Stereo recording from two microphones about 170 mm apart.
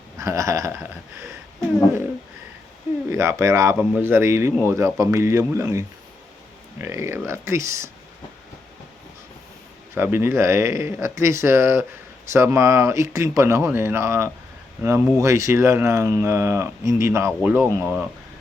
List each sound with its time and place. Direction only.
0.2 s speech: 20° right (ahead or behind)
3.1 s speech: 15° right (ahead or behind)
6.8 s speech: 15° right (ahead or behind)
9.9 s speech: 15° right (ahead or behind)